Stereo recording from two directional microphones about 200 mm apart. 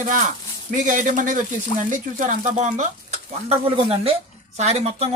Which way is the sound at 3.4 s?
30° right (ahead or behind).